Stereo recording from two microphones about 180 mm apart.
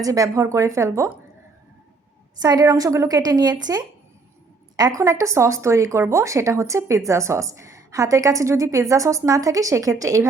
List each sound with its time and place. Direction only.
0.0 s speech: 20° right (ahead or behind)
2.4 s a woman's voice: 20° right (ahead or behind)